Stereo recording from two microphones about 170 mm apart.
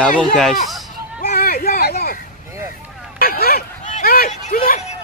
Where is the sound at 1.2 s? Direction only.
60° left (ahead or behind).